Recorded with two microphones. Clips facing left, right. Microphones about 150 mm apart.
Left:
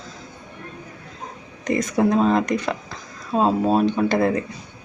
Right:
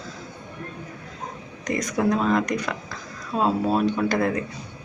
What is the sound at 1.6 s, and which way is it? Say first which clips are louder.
A woman's voice: left 4 dB; 25° left (ahead or behind).